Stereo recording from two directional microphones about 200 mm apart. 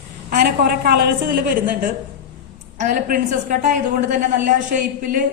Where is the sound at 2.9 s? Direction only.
45° right (ahead or behind).